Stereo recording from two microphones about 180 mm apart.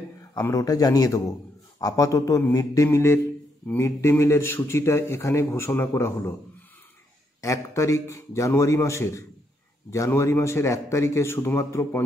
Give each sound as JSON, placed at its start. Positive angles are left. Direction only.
{"t": 0.3, "sound": "a man's voice", "side_deg": 20}
{"t": 7.4, "sound": "a man's voice", "side_deg": 15}